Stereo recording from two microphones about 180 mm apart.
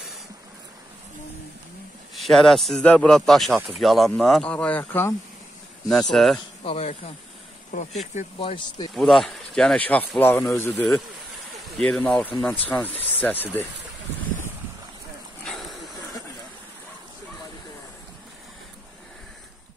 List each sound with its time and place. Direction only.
2.1 s speech: centre (ahead or behind)
6.6 s speech: 35° left (ahead or behind)
8.9 s speech: centre (ahead or behind)
15.4 s a sound: centre (ahead or behind)